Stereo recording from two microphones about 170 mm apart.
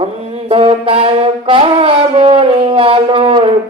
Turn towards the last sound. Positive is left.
turn(degrees=-30)  # may be behind; listen again after turning